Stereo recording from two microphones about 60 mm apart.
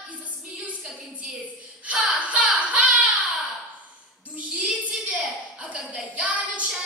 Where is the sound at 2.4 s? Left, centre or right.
Centre.